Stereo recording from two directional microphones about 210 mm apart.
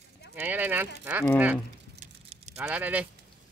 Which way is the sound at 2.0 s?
35° right (ahead or behind).